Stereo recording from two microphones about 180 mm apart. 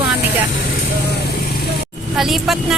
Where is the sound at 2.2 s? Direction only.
Centre (ahead or behind).